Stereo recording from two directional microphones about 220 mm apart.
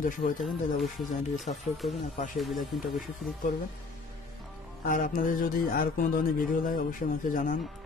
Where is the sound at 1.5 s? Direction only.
30° left (ahead or behind).